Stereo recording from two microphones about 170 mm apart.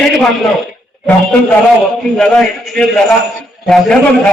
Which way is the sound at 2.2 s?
Centre (ahead or behind).